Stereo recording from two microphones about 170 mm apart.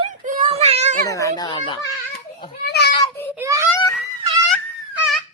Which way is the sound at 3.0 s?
10° left (ahead or behind).